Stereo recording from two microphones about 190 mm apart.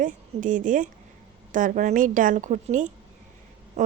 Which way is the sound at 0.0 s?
40° right (ahead or behind).